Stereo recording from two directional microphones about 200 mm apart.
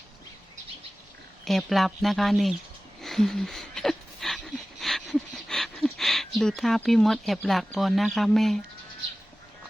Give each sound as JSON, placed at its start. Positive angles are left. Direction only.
{"t": 1.5, "sound": "speech", "side_deg": 0}
{"t": 3.0, "sound": "a sound", "side_deg": 0}
{"t": 7.8, "sound": "speech", "side_deg": 0}